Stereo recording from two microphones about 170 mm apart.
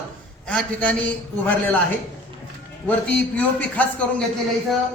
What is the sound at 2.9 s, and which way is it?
A man's voice, 10° left (ahead or behind).